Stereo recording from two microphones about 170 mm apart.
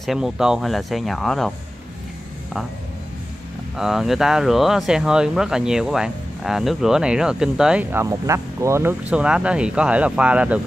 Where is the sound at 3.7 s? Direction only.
Centre (ahead or behind).